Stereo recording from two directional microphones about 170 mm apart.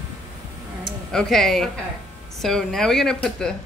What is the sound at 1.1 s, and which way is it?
Speech, centre (ahead or behind).